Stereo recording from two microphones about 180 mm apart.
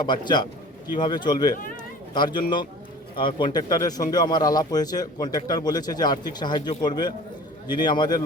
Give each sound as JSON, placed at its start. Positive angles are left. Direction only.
{"t": 0.0, "sound": "a man's voice", "side_deg": 25}